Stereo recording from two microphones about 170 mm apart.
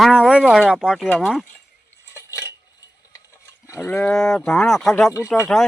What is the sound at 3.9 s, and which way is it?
Speech, centre (ahead or behind).